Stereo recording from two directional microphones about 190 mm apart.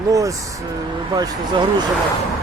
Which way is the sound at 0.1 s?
15° right (ahead or behind).